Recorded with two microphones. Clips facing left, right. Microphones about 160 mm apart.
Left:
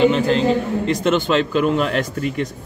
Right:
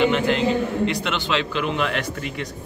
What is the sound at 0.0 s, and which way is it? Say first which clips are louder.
A man's voice: left 4 dB; 35° left (ahead or behind).